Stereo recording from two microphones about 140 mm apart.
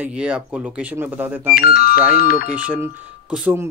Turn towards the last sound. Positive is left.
turn(degrees=-10)  # may be behind; listen again after turning